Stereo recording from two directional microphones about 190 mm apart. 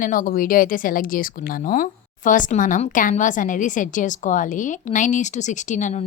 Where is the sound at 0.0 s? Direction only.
45° left (ahead or behind).